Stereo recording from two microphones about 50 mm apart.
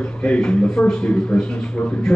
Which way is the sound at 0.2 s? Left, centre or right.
Left.